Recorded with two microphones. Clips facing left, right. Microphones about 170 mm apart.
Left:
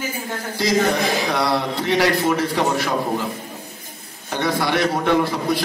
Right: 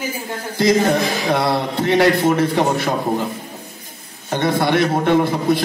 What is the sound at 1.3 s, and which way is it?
A man's voice, 25° right (ahead or behind).